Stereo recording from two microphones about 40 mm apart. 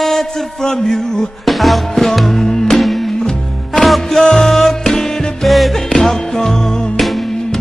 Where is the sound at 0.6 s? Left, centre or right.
Centre.